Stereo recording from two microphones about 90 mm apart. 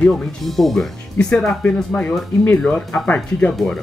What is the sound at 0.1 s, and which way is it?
Speech, 5° left (ahead or behind).